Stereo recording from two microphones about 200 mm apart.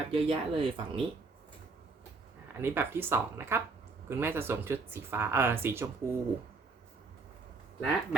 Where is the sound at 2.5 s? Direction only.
10° right (ahead or behind).